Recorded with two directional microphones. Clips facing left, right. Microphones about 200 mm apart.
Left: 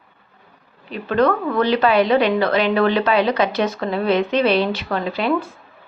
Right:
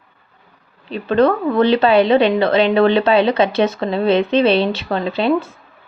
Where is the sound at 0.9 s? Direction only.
30° right (ahead or behind).